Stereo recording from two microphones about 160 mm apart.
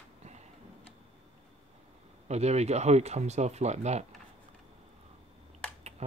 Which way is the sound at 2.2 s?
45° right (ahead or behind).